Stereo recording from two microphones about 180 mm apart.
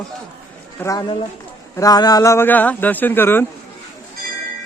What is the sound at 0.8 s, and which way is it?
A man's voice, 20° left (ahead or behind).